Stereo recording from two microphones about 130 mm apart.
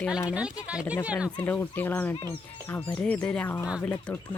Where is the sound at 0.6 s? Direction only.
10° right (ahead or behind).